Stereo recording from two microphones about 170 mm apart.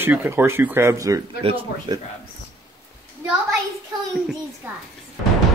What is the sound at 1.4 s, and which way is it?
Speech, 30° right (ahead or behind).